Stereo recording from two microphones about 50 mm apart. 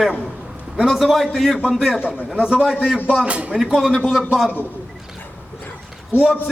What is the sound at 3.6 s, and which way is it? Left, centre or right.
Speech, centre.